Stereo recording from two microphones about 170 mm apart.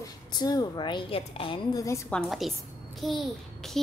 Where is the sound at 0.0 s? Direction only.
25° left (ahead or behind).